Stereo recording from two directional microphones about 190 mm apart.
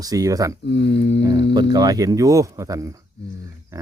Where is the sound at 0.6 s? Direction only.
65° left (ahead or behind).